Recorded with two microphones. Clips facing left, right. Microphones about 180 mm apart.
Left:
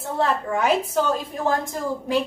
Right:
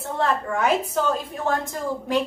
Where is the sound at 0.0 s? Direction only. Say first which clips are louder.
Left 1 dB; centre (ahead or behind).